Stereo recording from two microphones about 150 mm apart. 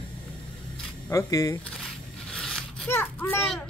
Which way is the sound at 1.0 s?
20° left (ahead or behind).